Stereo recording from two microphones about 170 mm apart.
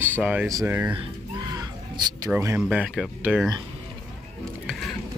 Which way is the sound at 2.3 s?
10° right (ahead or behind).